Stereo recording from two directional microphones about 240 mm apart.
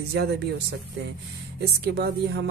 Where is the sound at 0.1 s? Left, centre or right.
Right.